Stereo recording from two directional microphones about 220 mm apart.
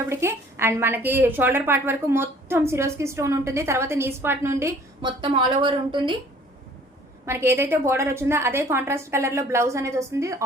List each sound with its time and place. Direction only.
0.1 s a woman's voice: 10° right (ahead or behind)
7.3 s a woman's voice: 10° right (ahead or behind)